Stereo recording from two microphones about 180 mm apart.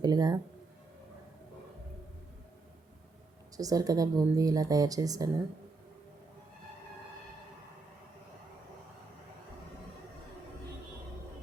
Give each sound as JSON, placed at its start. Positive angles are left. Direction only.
{"t": 0.0, "sound": "a woman's voice", "side_deg": -20}
{"t": 3.6, "sound": "a woman's voice", "side_deg": -20}